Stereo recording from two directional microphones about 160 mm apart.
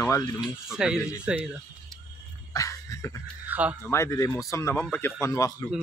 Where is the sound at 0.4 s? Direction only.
5° right (ahead or behind).